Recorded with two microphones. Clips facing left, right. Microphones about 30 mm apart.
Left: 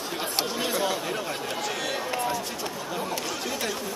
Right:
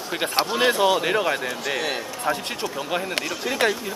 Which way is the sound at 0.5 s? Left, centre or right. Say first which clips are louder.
Right 10 dB; right.